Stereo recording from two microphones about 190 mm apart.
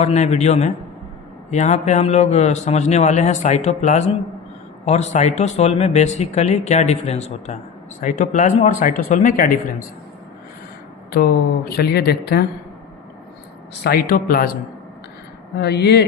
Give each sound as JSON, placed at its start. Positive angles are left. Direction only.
{"t": 0.0, "sound": "speech", "side_deg": 35}
{"t": 11.1, "sound": "speech", "side_deg": 55}
{"t": 13.8, "sound": "speech", "side_deg": 50}
{"t": 15.5, "sound": "speech", "side_deg": 60}